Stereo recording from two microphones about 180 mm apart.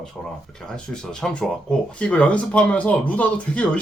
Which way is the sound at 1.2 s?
5° left (ahead or behind).